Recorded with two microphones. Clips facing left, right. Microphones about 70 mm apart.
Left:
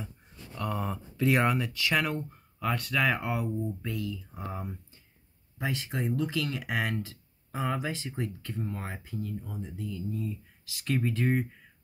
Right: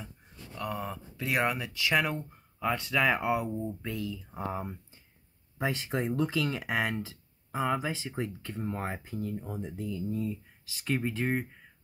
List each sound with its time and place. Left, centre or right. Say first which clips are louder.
0.6 s speech: left 2 dB; centre
1.7 s speech: even; centre
8.1 s speech: even; right
10.9 s speech: left 2 dB; centre